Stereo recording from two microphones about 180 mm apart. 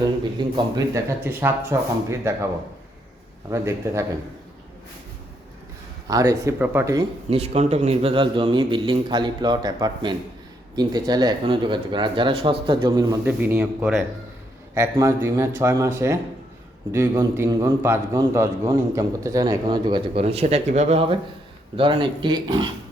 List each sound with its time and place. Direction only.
0.0 s speech: 25° right (ahead or behind)
3.5 s speech: 15° right (ahead or behind)
6.1 s speech: 20° right (ahead or behind)
7.3 s a man's voice: 35° right (ahead or behind)
13.2 s speech: 10° right (ahead or behind)
16.9 s a man's voice: 15° right (ahead or behind)